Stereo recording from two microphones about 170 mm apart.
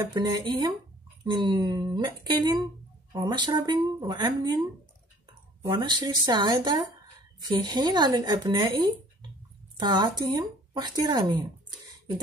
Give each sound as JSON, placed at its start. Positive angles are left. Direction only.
{"t": 0.1, "sound": "speech", "side_deg": -25}
{"t": 5.6, "sound": "speech", "side_deg": -25}